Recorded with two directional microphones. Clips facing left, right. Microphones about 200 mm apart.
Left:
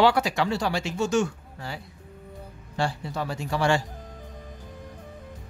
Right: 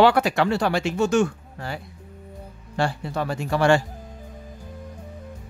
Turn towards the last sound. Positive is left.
turn(degrees=-55)  # may be behind; listen again after turning